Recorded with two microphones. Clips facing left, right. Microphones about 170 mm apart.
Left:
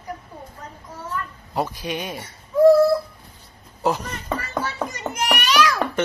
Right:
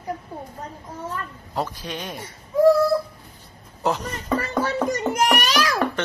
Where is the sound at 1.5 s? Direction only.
10° left (ahead or behind).